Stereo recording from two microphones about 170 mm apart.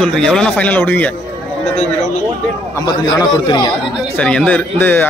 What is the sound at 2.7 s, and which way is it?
Speech, 25° left (ahead or behind).